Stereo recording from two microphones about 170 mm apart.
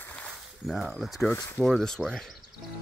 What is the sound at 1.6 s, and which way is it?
Speech, 5° left (ahead or behind).